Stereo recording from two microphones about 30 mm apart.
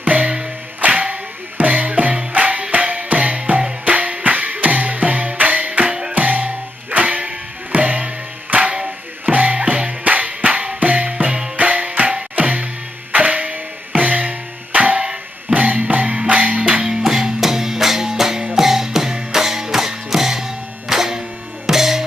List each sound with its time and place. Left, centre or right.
0.0 s music: right
3.5 s music: right
3.8 s music: right
5.9 s music: right
6.1 s music: right
8.5 s music: right
9.2 s music: right
10.0 s music: right
16.8 s music: centre